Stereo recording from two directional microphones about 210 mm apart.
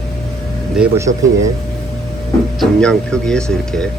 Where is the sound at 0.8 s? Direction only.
15° right (ahead or behind).